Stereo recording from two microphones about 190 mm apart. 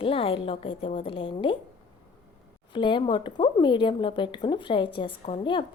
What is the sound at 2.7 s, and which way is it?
A woman's voice, 25° left (ahead or behind).